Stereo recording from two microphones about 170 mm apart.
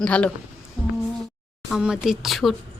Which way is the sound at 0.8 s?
Centre (ahead or behind).